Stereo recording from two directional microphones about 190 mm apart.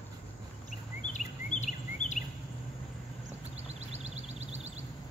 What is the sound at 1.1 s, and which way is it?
Insect, 40° left (ahead or behind).